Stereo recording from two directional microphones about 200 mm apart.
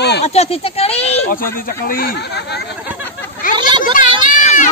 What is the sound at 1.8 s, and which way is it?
Speech, 45° left (ahead or behind).